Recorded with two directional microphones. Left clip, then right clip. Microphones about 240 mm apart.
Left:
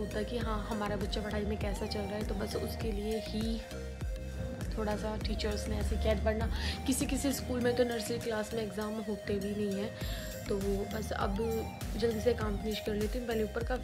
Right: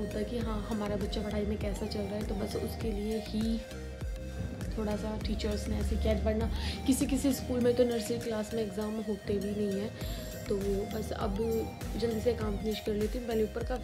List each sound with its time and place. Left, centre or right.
0.1 s speech: centre
4.7 s speech: centre
11.0 s speech: centre